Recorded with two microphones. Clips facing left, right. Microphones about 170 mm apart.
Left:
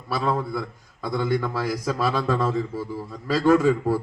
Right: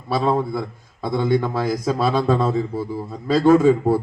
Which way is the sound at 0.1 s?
25° right (ahead or behind).